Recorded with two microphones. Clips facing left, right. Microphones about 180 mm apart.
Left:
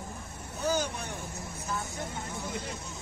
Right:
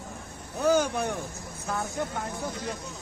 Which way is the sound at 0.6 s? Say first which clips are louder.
Right 7 dB; 60° right (ahead or behind).